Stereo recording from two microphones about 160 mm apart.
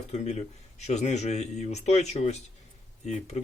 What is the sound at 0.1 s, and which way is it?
Speech, 45° left (ahead or behind).